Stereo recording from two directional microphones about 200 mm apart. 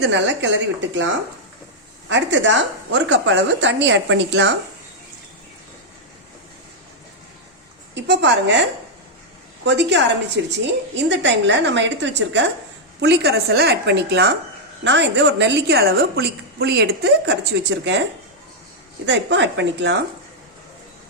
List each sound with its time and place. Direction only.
0.0 s a woman's voice: 65° right (ahead or behind)
2.0 s a woman's voice: 65° right (ahead or behind)
7.9 s a woman's voice: 60° right (ahead or behind)
9.6 s a woman's voice: 60° right (ahead or behind)
19.0 s a woman's voice: 60° right (ahead or behind)